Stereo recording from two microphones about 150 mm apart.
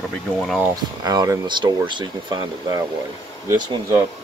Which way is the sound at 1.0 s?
25° right (ahead or behind).